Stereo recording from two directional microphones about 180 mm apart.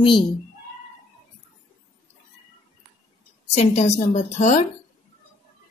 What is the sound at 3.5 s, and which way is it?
A woman's voice, 40° left (ahead or behind).